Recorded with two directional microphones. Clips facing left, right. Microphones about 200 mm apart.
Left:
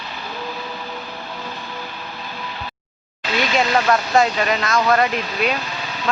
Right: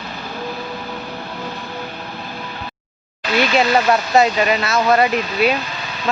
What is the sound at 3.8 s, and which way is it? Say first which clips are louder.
Speech: right 2 dB; 10° right (ahead or behind).